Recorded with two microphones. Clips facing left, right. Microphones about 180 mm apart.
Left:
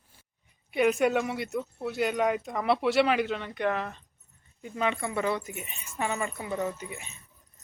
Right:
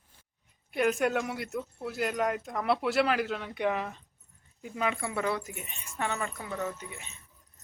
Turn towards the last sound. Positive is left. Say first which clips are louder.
# left 3 dB
turn(degrees=10)  # may be behind; listen again after turning